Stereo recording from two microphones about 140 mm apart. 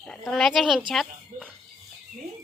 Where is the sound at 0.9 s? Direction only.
Centre (ahead or behind).